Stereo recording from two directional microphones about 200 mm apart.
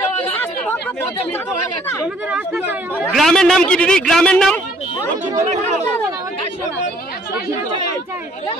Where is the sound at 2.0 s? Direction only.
5° right (ahead or behind).